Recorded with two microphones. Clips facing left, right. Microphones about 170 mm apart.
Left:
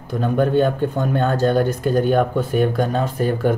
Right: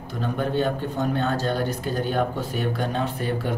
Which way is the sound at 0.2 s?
50° left (ahead or behind).